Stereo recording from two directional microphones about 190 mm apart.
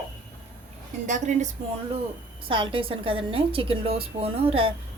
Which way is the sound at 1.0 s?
40° right (ahead or behind).